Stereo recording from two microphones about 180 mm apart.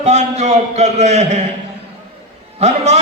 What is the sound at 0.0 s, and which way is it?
A man's voice, 40° right (ahead or behind).